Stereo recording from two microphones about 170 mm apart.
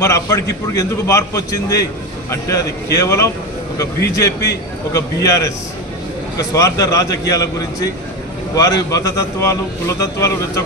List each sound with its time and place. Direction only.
0.0 s a man's voice: 20° left (ahead or behind)